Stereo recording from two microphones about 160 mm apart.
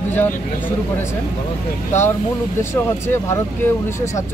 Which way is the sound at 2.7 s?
15° left (ahead or behind).